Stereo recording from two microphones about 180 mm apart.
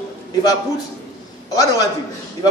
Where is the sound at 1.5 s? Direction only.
20° left (ahead or behind).